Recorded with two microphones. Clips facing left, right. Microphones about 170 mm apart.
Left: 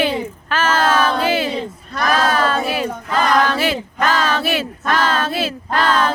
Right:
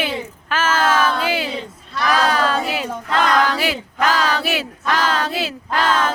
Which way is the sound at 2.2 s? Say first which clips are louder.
Left 1 dB; 15° right (ahead or behind).